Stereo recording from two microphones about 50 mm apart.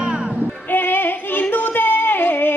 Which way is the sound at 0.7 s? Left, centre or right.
Left.